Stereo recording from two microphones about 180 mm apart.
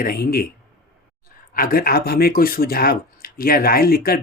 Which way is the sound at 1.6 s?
55° left (ahead or behind).